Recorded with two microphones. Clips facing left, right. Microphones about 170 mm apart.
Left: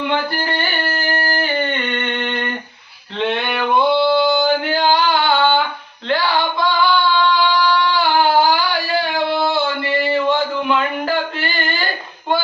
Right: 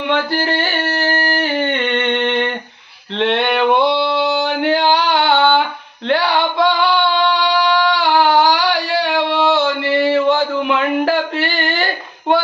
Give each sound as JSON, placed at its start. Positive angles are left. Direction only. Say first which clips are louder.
{"t": 0.1, "sound": "music", "louder": "right 3 dB", "side_deg": -85}
{"t": 1.4, "sound": "humming", "louder": "right 3 dB", "side_deg": -90}
{"t": 3.2, "sound": "male singing", "louder": "right 4 dB", "side_deg": -80}
{"t": 6.1, "sound": "singing", "louder": "right 2 dB", "side_deg": -70}
{"t": 10.1, "sound": "a sound", "louder": "right 1 dB", "side_deg": -85}